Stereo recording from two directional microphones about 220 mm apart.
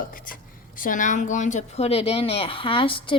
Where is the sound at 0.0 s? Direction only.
40° left (ahead or behind).